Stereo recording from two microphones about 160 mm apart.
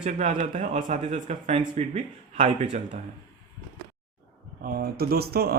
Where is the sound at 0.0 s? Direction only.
45° right (ahead or behind).